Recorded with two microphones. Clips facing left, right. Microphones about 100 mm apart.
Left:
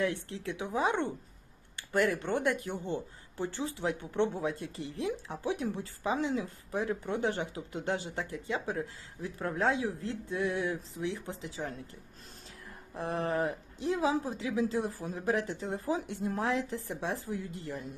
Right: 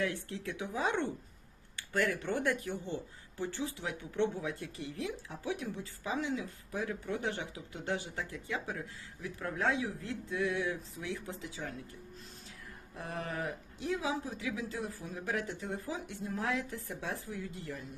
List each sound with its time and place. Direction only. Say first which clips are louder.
0.0 s speech: left 3 dB; 25° left (ahead or behind)
2.9 s speech: left 4 dB; 30° left (ahead or behind)
6.1 s speech: left 4 dB; 25° left (ahead or behind)
13.0 s speech: left 7 dB; 30° left (ahead or behind)
16.4 s speech: left 3 dB; 25° left (ahead or behind)